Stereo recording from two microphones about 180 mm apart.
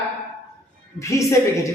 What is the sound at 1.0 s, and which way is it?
Speech, 15° left (ahead or behind).